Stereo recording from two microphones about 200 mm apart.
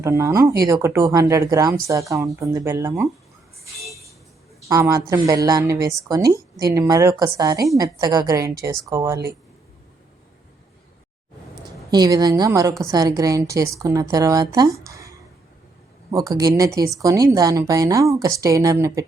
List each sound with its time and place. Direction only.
0.0 s speech: 15° right (ahead or behind)
4.7 s speech: 15° right (ahead or behind)
11.9 s speech: 20° right (ahead or behind)
16.1 s speech: 20° right (ahead or behind)